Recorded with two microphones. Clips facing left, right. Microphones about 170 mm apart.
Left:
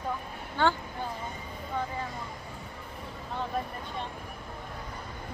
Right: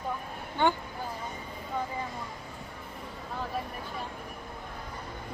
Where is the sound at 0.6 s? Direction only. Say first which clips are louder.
Even; 20° right (ahead or behind).